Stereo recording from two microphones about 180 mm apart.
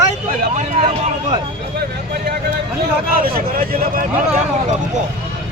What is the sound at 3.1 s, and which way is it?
Speech, 55° right (ahead or behind).